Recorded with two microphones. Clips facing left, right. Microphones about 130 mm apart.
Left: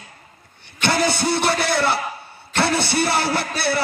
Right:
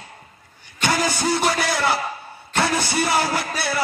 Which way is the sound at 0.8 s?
70° left (ahead or behind).